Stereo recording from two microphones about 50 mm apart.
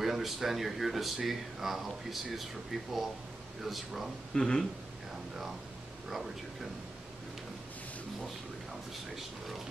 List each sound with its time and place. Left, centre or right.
0.0 s speech: centre
4.3 s speech: centre
6.0 s speech: centre